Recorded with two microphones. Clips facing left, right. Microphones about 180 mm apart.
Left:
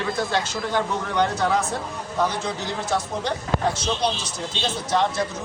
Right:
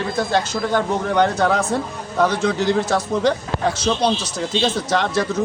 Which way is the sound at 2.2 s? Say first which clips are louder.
Right 7 dB; 80° right.